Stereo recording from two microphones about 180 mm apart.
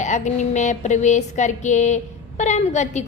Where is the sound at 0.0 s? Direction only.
40° left (ahead or behind).